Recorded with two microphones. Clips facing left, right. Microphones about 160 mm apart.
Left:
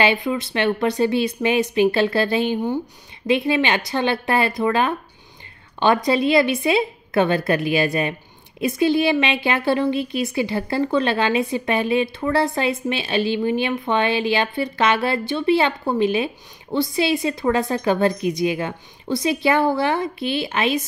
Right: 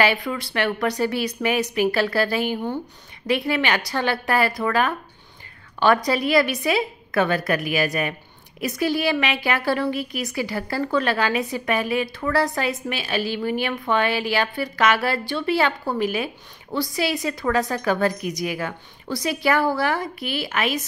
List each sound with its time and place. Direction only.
0.0 s a woman's voice: 20° left (ahead or behind)